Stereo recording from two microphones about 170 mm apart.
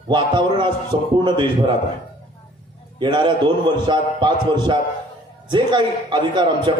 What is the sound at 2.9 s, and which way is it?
A man's voice, 25° right (ahead or behind).